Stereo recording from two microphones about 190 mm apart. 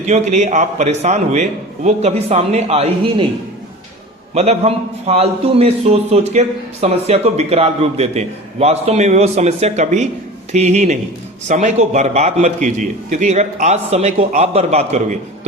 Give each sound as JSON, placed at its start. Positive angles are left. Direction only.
{"t": 0.0, "sound": "a man's voice", "side_deg": -40}
{"t": 4.4, "sound": "a man's voice", "side_deg": -35}